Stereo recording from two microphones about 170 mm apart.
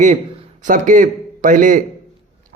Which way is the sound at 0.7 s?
50° right (ahead or behind).